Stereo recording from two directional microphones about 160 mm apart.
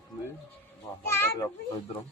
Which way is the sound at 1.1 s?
15° left (ahead or behind).